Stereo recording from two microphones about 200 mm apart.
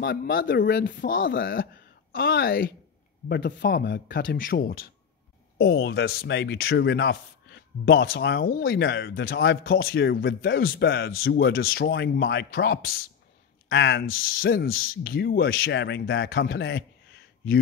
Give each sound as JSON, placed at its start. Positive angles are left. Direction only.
{"t": 0.0, "sound": "speech", "side_deg": 45}
{"t": 3.3, "sound": "speech", "side_deg": 60}